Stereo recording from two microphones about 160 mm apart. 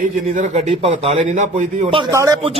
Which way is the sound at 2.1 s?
20° right (ahead or behind).